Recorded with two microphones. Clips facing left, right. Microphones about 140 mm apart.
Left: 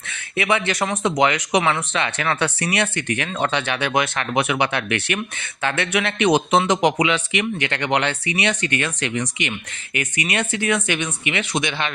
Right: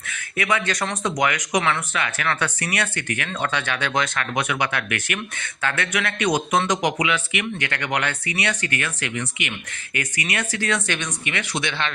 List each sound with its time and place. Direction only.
0.1 s speech: 25° left (ahead or behind)